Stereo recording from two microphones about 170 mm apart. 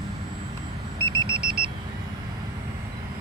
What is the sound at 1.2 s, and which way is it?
Vehicle, 65° right (ahead or behind).